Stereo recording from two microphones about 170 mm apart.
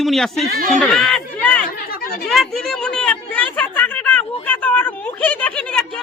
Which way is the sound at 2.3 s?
Centre (ahead or behind).